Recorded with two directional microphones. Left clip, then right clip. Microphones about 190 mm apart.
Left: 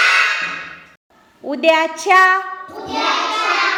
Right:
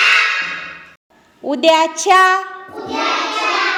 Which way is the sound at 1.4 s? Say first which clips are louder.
Right 2 dB; 30° right (ahead or behind).